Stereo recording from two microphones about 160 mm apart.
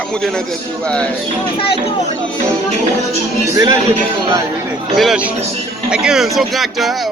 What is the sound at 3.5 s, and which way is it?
Speech, 20° right (ahead or behind).